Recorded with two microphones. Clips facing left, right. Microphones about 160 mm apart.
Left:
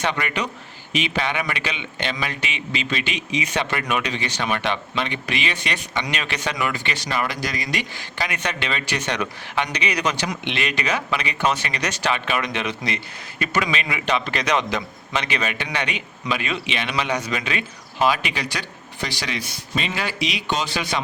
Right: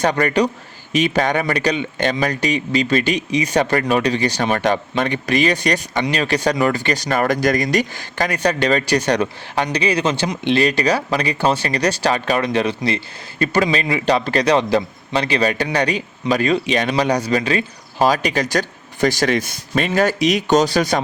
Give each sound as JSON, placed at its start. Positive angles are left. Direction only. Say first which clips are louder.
{"t": 0.0, "sound": "a man's voice", "louder": "right 8 dB", "side_deg": -40}